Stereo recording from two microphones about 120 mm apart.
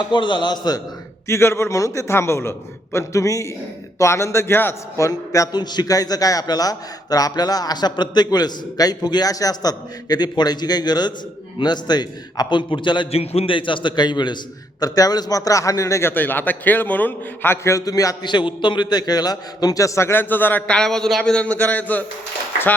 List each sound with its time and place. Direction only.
0.1 s a man's voice: 40° left (ahead or behind)
1.3 s a man's voice: 20° left (ahead or behind); by 13.1 s 40° left (ahead or behind)
13.1 s a man's voice: 60° left (ahead or behind); by 22.0 s 15° left (ahead or behind)